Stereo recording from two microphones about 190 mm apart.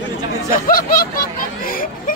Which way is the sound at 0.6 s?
50° left (ahead or behind).